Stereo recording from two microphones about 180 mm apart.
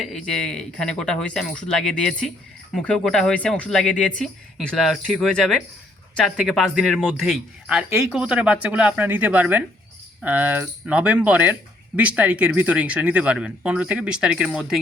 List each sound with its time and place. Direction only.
0.0 s a man's voice: 5° left (ahead or behind)